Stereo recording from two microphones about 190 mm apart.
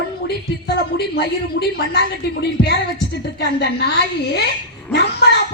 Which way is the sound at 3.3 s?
60° left (ahead or behind).